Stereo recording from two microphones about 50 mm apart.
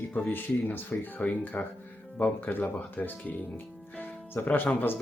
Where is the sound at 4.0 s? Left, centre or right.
Left.